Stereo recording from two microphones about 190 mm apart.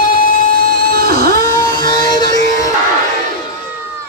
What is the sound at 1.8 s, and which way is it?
Music, 20° left (ahead or behind).